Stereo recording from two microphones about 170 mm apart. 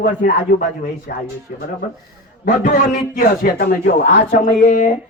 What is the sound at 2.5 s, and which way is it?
A man's voice, 50° left (ahead or behind).